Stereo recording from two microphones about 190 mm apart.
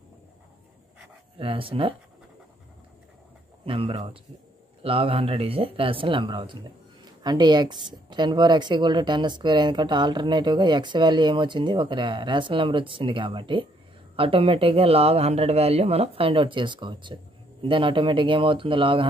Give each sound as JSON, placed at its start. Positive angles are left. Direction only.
{"t": 1.4, "sound": "speech", "side_deg": -30}
{"t": 3.6, "sound": "speech", "side_deg": -30}